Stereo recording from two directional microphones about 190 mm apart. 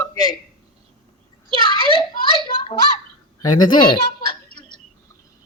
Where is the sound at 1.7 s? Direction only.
25° left (ahead or behind).